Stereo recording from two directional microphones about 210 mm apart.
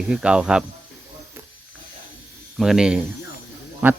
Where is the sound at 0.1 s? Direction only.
5° right (ahead or behind).